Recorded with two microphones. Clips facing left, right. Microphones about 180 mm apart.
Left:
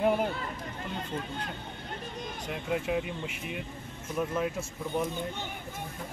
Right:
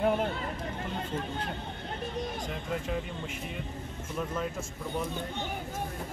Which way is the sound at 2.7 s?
10° left (ahead or behind).